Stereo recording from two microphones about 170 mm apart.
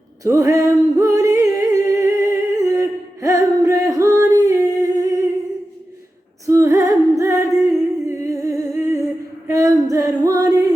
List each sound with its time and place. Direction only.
0.3 s music: 20° right (ahead or behind)
6.4 s music: 15° right (ahead or behind)
8.0 s humming: 20° right (ahead or behind)
9.5 s music: 20° right (ahead or behind)